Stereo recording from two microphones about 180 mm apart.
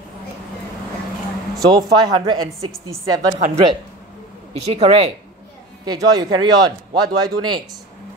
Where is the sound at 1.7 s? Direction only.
25° right (ahead or behind).